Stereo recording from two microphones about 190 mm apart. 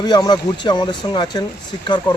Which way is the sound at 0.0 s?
20° left (ahead or behind).